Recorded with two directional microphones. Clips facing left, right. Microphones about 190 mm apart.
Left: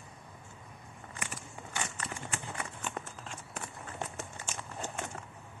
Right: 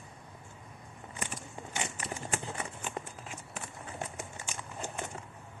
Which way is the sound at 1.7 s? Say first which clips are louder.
Right 1 dB; 20° right (ahead or behind).